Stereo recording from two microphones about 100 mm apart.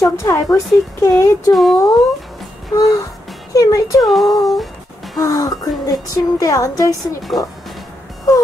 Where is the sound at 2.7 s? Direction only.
35° left (ahead or behind).